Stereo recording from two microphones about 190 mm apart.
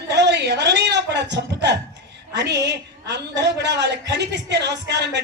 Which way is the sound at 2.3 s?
65° right (ahead or behind).